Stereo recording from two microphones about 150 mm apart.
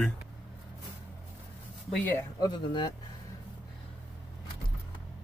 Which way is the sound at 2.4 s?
30° left (ahead or behind).